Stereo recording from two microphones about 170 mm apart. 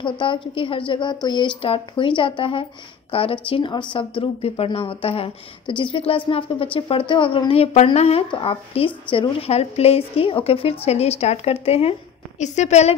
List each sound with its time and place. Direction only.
0.0 s a woman's voice: 30° left (ahead or behind)